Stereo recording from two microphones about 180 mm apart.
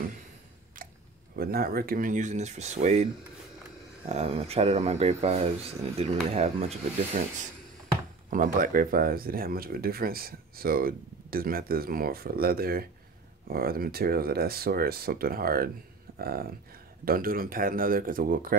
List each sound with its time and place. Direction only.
0.8 s camera: 50° right (ahead or behind)
1.3 s speech: 60° right (ahead or behind); by 6.7 s 35° right (ahead or behind)
8.3 s speech: 50° right (ahead or behind)